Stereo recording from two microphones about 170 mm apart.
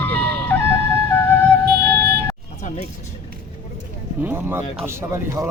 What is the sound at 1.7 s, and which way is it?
Music, 70° right (ahead or behind).